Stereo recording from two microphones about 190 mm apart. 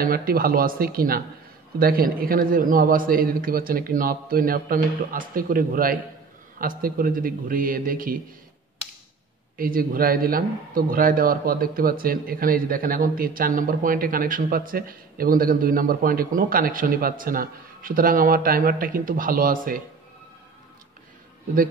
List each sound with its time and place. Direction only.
0.0 s a man's voice: 50° right (ahead or behind)
9.6 s a man's voice: 50° right (ahead or behind)